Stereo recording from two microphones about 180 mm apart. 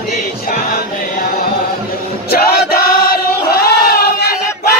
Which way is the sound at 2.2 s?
55° left (ahead or behind).